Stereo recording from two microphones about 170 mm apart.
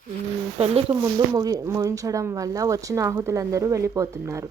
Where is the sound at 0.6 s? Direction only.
35° right (ahead or behind).